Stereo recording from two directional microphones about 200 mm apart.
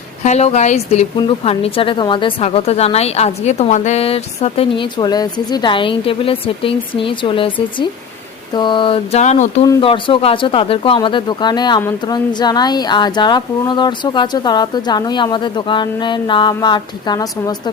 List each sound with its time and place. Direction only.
0.3 s speech: 35° left (ahead or behind)